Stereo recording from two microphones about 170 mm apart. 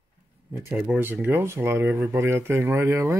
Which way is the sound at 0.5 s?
10° right (ahead or behind).